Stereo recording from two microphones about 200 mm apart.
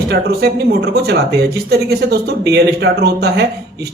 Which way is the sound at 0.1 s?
50° right (ahead or behind).